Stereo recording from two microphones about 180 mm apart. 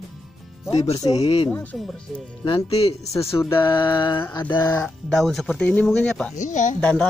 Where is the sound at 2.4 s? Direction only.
25° left (ahead or behind).